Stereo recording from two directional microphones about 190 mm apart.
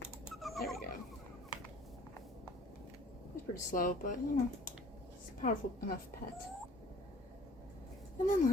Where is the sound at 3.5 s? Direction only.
45° left (ahead or behind).